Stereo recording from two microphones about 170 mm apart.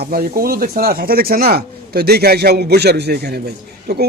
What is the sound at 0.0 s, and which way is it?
A man's voice, 65° right (ahead or behind).